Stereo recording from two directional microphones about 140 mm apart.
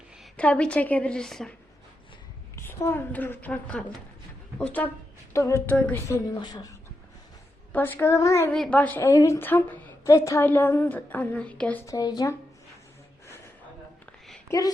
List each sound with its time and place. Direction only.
0.3 s a woman's voice: 10° left (ahead or behind)
2.6 s a woman's voice: 15° left (ahead or behind)
5.7 s a woman's voice: 10° left (ahead or behind)
6.1 s speech: 25° left (ahead or behind)
7.7 s a woman's voice: 15° left (ahead or behind)
8.5 s a woman's voice: 5° left (ahead or behind)
9.0 s a woman's voice: 20° left (ahead or behind)
11.9 s speech: 30° left (ahead or behind)
14.5 s speech: 20° left (ahead or behind)